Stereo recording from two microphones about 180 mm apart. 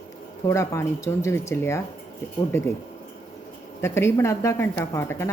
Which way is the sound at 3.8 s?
15° left (ahead or behind).